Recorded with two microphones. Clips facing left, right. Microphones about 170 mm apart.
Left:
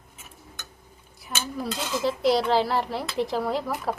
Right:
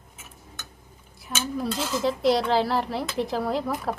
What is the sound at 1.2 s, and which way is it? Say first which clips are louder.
Speech: right 3 dB; centre (ahead or behind).